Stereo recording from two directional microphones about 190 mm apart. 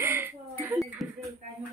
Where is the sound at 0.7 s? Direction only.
Centre (ahead or behind).